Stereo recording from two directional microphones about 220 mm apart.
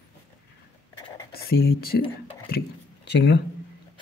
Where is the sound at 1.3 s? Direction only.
45° left (ahead or behind).